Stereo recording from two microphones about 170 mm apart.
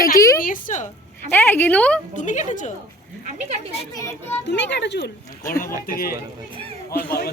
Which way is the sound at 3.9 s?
20° left (ahead or behind).